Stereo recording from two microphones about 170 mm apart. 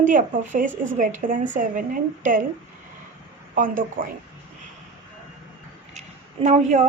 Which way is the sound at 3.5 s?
50° right (ahead or behind).